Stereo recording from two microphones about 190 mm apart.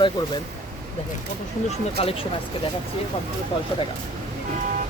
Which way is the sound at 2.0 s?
30° left (ahead or behind).